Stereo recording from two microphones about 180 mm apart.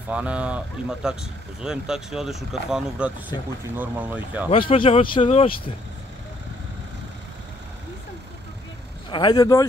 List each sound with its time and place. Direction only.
0.1 s speech: 5° right (ahead or behind)
4.5 s speech: 30° left (ahead or behind)
9.1 s speech: 25° left (ahead or behind)